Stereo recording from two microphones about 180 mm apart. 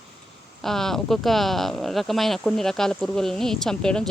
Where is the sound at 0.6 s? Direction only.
Centre (ahead or behind).